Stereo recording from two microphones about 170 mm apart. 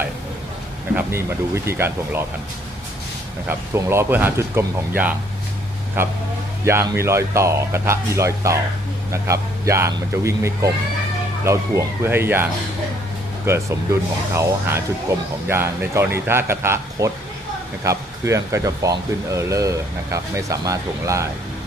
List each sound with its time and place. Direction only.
0.9 s speech: 15° right (ahead or behind)
3.4 s speech: 15° right (ahead or behind)